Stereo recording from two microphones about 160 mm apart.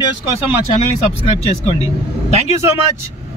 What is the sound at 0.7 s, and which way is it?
Speech, 40° left (ahead or behind).